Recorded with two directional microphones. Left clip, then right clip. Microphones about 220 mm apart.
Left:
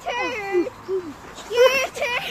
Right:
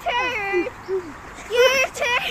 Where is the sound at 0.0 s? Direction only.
35° right (ahead or behind).